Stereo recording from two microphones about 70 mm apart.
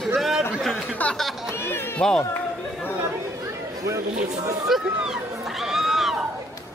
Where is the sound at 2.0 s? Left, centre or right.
Centre.